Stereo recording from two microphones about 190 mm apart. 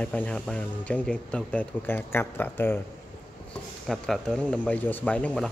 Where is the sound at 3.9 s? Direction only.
5° left (ahead or behind).